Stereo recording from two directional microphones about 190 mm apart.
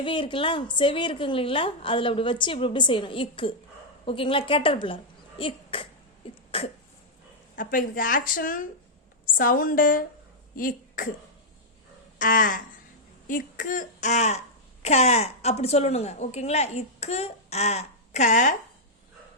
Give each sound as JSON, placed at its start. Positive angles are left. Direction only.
{"t": 0.0, "sound": "a woman's voice", "side_deg": 25}
{"t": 6.5, "sound": "cough", "side_deg": 30}
{"t": 7.5, "sound": "a woman's voice", "side_deg": 45}
{"t": 12.2, "sound": "speech", "side_deg": 45}